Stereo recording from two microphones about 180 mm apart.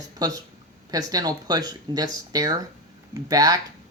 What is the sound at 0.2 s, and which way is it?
Speech, 20° right (ahead or behind).